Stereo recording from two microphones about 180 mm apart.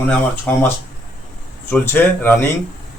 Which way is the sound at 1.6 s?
10° left (ahead or behind).